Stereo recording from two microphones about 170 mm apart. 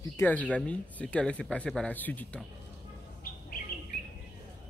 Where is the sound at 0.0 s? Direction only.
15° left (ahead or behind).